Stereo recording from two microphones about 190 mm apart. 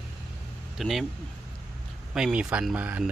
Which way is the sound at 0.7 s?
Centre (ahead or behind).